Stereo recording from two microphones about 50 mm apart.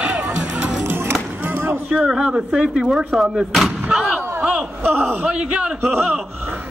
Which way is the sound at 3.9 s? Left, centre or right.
Centre.